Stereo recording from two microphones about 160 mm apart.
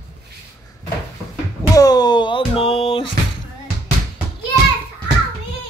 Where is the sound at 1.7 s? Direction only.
25° left (ahead or behind).